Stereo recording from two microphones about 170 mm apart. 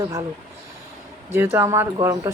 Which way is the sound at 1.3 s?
15° right (ahead or behind).